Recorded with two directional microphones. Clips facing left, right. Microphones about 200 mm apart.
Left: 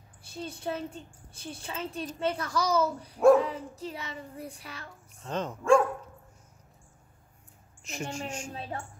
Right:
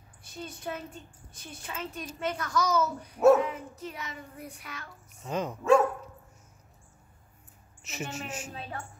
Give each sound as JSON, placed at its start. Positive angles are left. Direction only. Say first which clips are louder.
{"t": 0.2, "sound": "a woman's voice", "louder": "left 3 dB", "side_deg": 30}
{"t": 5.1, "sound": "speech", "louder": "right 1 dB", "side_deg": -10}
{"t": 7.8, "sound": "a woman's voice", "louder": "left 2 dB", "side_deg": -5}
{"t": 8.5, "sound": "speech", "louder": "left 2 dB", "side_deg": 30}